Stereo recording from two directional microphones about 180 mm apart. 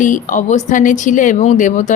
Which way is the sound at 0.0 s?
45° left (ahead or behind).